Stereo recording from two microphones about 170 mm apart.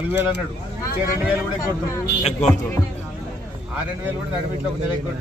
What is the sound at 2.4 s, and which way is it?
Speech, 45° left (ahead or behind).